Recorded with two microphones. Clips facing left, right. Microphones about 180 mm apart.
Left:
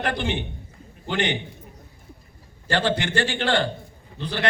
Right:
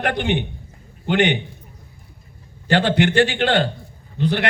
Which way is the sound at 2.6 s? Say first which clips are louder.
Right 6 dB; 65° right (ahead or behind).